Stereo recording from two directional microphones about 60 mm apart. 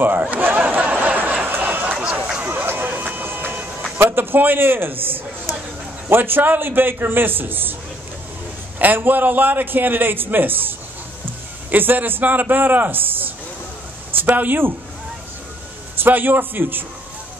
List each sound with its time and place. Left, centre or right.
0.0 s a sound: right
2.0 s a sound: centre
2.4 s music: right
4.0 s a man's voice: right
8.7 s a man's voice: right
11.7 s a man's voice: right
14.3 s a man's voice: right
16.0 s a man's voice: right